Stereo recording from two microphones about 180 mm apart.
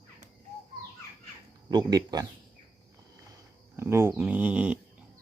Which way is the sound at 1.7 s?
20° right (ahead or behind).